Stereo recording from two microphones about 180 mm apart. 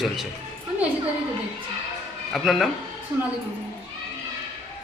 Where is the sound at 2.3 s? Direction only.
Centre (ahead or behind).